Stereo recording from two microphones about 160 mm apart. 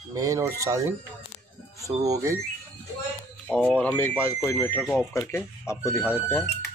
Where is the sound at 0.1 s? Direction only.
20° right (ahead or behind).